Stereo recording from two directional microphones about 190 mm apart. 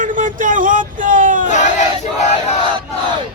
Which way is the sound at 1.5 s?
40° left (ahead or behind).